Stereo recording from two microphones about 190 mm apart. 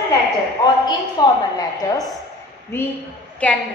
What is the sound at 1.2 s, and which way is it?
A woman's voice, 20° left (ahead or behind).